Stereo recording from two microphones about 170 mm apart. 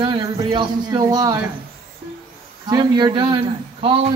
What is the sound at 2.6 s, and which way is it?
Speech, 25° right (ahead or behind).